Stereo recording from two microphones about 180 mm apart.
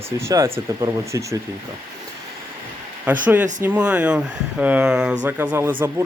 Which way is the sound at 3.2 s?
10° right (ahead or behind).